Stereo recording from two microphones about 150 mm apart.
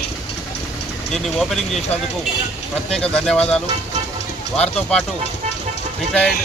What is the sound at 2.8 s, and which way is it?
Speech, 5° left (ahead or behind).